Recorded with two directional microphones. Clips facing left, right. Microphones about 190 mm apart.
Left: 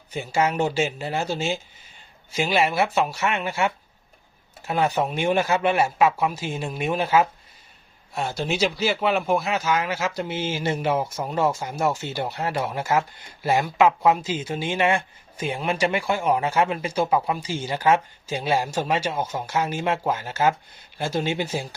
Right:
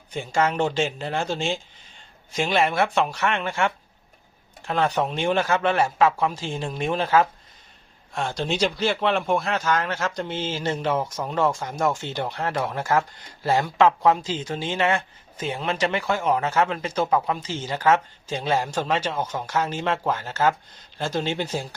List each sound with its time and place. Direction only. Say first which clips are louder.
0.1 s speech: even; 10° left (ahead or behind)